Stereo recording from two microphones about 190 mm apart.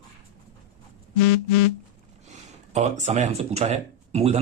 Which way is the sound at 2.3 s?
35° right (ahead or behind).